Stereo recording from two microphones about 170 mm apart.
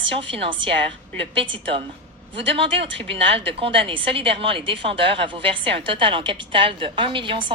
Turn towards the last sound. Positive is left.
turn(degrees=-30)  # may be behind; listen again after turning